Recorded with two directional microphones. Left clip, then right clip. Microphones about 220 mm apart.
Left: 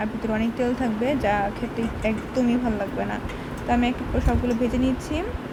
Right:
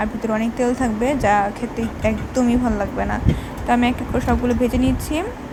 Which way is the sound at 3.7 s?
15° right (ahead or behind).